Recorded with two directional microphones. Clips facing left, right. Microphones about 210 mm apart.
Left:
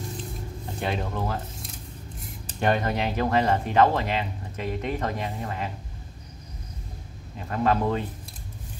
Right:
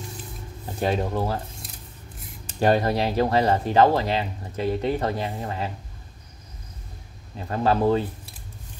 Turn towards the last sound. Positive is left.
turn(degrees=-30)  # may be behind; listen again after turning